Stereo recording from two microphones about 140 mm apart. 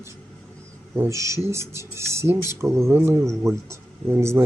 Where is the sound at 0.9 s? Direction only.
20° right (ahead or behind).